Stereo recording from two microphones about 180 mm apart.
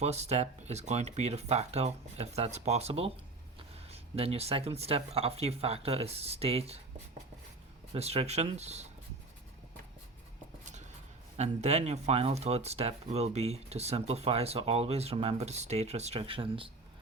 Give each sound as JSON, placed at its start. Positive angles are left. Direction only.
{"t": 0.0, "sound": "speech", "side_deg": -35}
{"t": 7.9, "sound": "speech", "side_deg": -35}
{"t": 11.3, "sound": "speech", "side_deg": -35}